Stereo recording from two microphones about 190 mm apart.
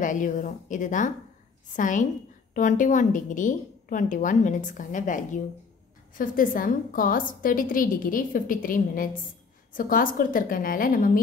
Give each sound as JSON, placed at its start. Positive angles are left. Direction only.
{"t": 0.0, "sound": "a woman's voice", "side_deg": 45}